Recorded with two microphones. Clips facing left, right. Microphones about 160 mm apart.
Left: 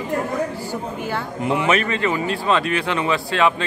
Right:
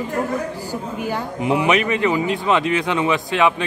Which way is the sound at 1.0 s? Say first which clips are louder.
Right 3 dB; 10° right (ahead or behind).